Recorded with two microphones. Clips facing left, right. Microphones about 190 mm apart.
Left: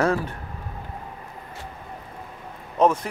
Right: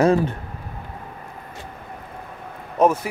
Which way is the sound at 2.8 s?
10° right (ahead or behind).